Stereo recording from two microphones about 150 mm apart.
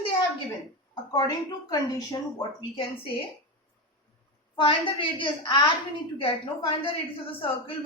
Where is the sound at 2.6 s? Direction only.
35° left (ahead or behind).